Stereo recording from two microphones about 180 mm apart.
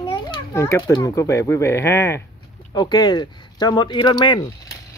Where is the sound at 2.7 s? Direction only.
20° left (ahead or behind).